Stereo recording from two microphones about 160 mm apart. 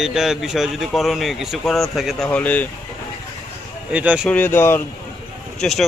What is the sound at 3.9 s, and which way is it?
Speech, 5° right (ahead or behind).